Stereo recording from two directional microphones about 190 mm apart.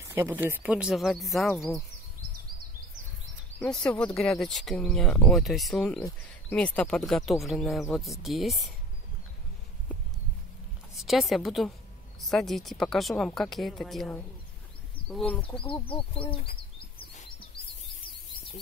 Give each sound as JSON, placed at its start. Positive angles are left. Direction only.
{"t": 0.1, "sound": "speech", "side_deg": -10}
{"t": 3.5, "sound": "speech", "side_deg": 5}
{"t": 11.0, "sound": "speech", "side_deg": 0}
{"t": 15.5, "sound": "speech", "side_deg": 25}